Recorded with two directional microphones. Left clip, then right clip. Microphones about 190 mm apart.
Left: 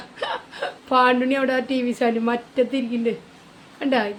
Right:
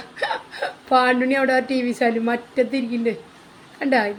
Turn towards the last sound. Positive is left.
turn(degrees=5)  # may be behind; listen again after turning